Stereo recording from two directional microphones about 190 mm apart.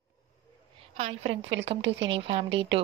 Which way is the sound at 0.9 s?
30° right (ahead or behind).